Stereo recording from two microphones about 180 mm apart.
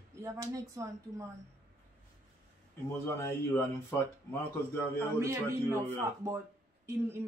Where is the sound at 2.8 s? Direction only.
15° left (ahead or behind).